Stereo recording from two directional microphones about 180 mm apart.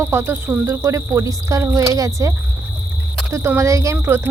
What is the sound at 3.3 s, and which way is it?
Speech, 15° right (ahead or behind).